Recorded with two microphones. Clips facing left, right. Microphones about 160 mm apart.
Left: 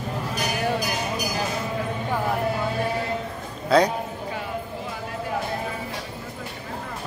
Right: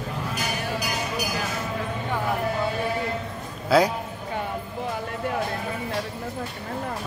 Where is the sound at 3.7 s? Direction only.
5° right (ahead or behind).